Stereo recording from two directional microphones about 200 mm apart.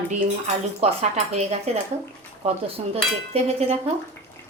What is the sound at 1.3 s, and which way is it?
A woman's voice, 35° right (ahead or behind).